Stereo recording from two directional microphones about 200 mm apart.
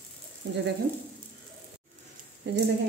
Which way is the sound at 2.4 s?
60° right (ahead or behind).